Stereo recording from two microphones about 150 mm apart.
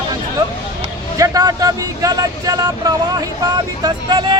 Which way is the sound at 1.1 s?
25° right (ahead or behind).